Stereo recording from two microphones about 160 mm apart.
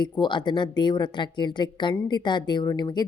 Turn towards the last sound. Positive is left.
turn(degrees=25)  # may be behind; listen again after turning